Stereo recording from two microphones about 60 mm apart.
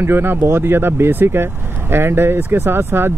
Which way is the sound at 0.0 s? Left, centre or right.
Right.